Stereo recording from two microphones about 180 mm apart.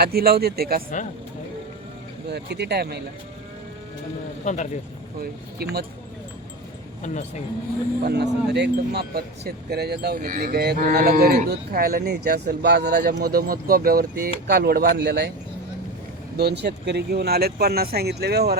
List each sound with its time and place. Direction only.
0.0 s speech: 60° right (ahead or behind)
2.3 s speech: 65° right (ahead or behind)
4.4 s speech: 40° left (ahead or behind)
5.2 s speech: 60° right (ahead or behind)
7.0 s speech: 40° left (ahead or behind)
8.0 s speech: 65° right (ahead or behind)
16.4 s speech: 65° right (ahead or behind)